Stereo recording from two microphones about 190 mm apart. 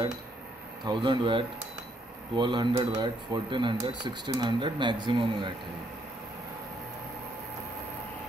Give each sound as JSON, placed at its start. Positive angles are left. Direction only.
{"t": 0.8, "sound": "speech", "side_deg": -25}